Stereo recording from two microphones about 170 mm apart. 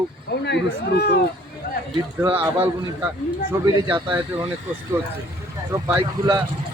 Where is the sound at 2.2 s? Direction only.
15° right (ahead or behind).